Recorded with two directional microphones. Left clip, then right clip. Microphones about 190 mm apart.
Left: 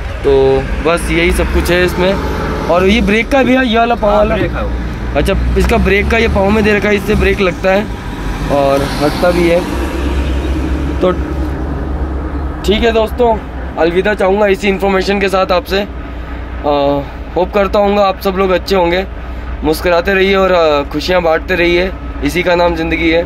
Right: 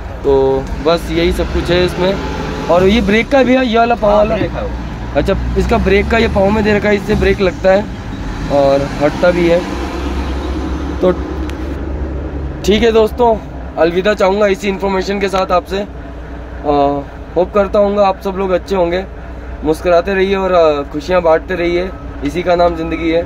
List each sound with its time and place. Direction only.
0.3 s speech: 5° right (ahead or behind)
5.1 s speech: centre (ahead or behind)
11.0 s speech: 5° right (ahead or behind)
12.7 s speech: 35° right (ahead or behind)
13.7 s speech: 10° right (ahead or behind)